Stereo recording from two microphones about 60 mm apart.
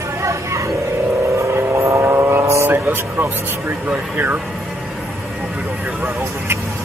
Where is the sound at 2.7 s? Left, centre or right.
Right.